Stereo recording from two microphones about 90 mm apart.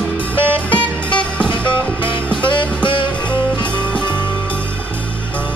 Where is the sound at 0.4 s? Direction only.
15° left (ahead or behind).